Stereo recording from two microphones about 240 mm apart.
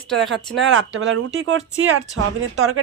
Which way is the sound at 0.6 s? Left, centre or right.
Right.